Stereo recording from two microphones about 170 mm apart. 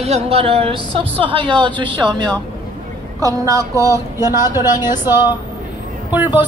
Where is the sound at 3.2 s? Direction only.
20° right (ahead or behind).